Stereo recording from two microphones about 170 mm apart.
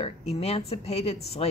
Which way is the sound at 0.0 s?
40° left (ahead or behind).